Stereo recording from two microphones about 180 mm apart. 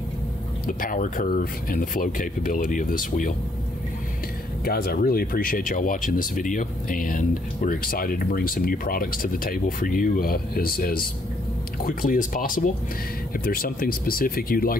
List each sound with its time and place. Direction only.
0.7 s speech: 50° left (ahead or behind)
4.6 s speech: 55° left (ahead or behind)